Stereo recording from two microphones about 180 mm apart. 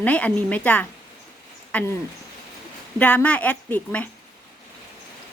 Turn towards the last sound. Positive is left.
turn(degrees=10)  # may be behind; listen again after turning